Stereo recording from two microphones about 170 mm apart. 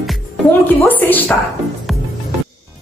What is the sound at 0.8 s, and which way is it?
Speech, 10° left (ahead or behind).